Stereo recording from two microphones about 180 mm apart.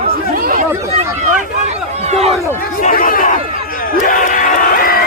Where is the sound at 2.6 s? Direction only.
50° left (ahead or behind).